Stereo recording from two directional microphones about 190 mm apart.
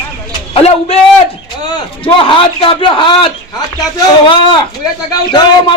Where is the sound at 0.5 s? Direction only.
30° left (ahead or behind).